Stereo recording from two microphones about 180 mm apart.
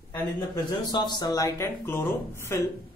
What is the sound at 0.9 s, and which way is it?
A woman's voice, 25° left (ahead or behind).